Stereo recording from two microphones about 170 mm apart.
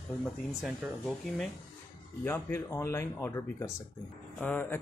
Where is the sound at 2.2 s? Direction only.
15° left (ahead or behind).